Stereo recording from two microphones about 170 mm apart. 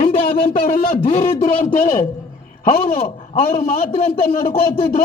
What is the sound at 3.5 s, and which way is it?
A man's voice, 45° left (ahead or behind).